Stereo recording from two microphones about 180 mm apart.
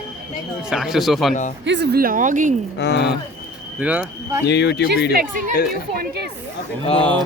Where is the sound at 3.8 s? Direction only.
5° right (ahead or behind).